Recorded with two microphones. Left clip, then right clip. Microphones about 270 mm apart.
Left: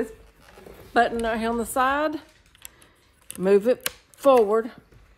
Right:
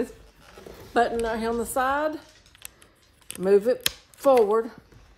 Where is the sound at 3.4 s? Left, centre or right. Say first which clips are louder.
Left 1 dB; left.